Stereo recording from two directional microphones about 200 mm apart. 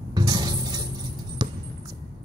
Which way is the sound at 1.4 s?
20° right (ahead or behind).